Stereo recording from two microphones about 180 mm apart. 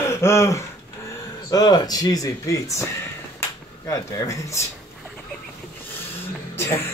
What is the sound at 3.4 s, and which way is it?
Finger snapping, 20° left (ahead or behind).